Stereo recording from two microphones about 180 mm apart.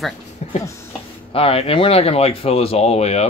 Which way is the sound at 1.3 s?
30° left (ahead or behind).